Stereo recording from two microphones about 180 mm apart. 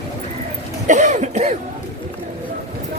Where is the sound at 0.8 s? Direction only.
45° right (ahead or behind).